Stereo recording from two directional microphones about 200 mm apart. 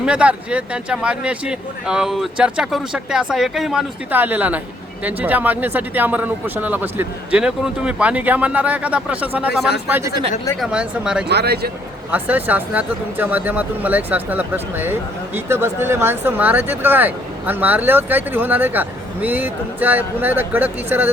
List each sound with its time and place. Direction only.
0.0 s speech: 5° right (ahead or behind)
10.6 s speech: 5° right (ahead or behind)
11.3 s speech: 55° right (ahead or behind)
12.1 s speech: 10° right (ahead or behind)